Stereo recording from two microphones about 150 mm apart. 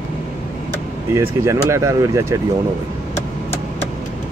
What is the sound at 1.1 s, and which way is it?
Speech, 20° right (ahead or behind).